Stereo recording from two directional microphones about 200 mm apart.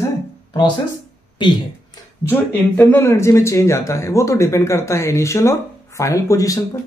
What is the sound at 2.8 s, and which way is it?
Speech, 10° left (ahead or behind).